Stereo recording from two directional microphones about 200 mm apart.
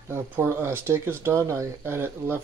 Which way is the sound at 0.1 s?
10° right (ahead or behind).